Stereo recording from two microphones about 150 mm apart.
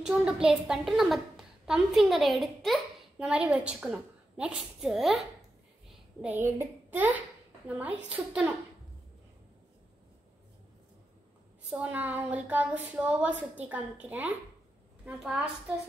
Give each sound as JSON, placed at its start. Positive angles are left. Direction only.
{"t": 0.0, "sound": "a woman's voice", "side_deg": -5}
{"t": 6.2, "sound": "a child's voice", "side_deg": -15}
{"t": 11.7, "sound": "speech", "side_deg": -10}